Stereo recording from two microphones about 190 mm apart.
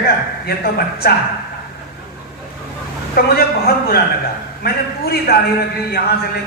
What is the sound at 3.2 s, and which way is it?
A man's voice, 55° left (ahead or behind).